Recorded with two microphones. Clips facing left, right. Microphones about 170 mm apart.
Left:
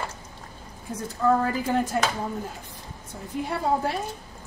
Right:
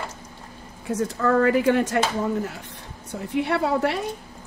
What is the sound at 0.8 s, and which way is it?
Speech, 80° right.